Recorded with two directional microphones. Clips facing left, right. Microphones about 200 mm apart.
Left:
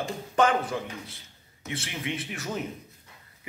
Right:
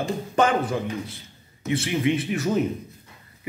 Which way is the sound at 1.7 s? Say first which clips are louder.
Right 11 dB; 10° right (ahead or behind).